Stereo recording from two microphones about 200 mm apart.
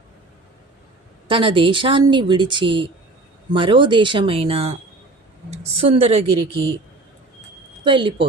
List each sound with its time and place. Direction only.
1.3 s a woman's voice: 25° right (ahead or behind)
7.9 s speech: 25° right (ahead or behind)